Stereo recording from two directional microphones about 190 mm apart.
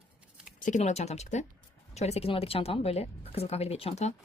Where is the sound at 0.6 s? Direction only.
40° left (ahead or behind).